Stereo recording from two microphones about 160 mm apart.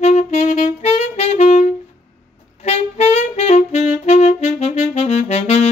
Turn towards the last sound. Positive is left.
turn(degrees=40)  # may be behind; listen again after turning